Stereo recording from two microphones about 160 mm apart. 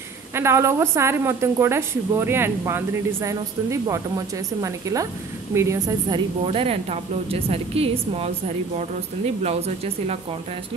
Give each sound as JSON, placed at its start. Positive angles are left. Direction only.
{"t": 0.3, "sound": "a woman's voice", "side_deg": -15}
{"t": 6.0, "sound": "a woman's voice", "side_deg": -30}
{"t": 9.4, "sound": "a woman's voice", "side_deg": -40}